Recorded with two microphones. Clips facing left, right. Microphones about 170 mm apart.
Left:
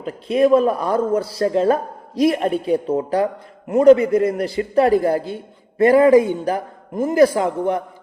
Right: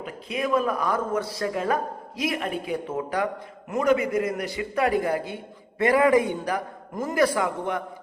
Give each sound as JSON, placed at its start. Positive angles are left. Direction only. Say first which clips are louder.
{"t": 0.0, "sound": "a man's voice", "louder": "left 12 dB", "side_deg": 35}